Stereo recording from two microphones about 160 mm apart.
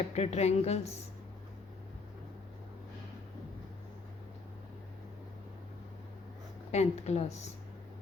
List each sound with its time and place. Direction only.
0.1 s a woman's voice: 40° left (ahead or behind)
6.7 s speech: 45° left (ahead or behind)